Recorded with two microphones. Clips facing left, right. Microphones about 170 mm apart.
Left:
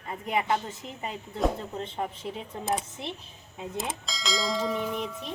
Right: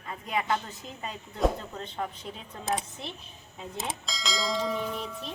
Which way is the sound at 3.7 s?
Centre (ahead or behind).